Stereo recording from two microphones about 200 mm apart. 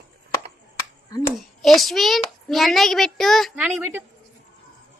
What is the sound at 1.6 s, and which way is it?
A child's voice, centre (ahead or behind).